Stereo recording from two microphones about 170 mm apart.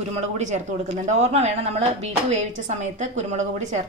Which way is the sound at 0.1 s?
45° right (ahead or behind).